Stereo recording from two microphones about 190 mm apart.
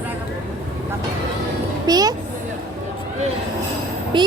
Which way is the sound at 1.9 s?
20° right (ahead or behind).